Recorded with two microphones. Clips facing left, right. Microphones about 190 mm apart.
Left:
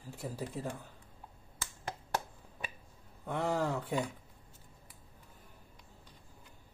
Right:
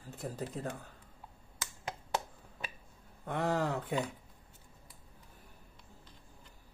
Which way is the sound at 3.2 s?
10° left (ahead or behind).